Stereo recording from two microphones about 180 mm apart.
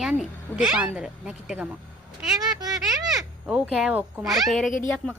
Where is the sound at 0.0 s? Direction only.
5° right (ahead or behind).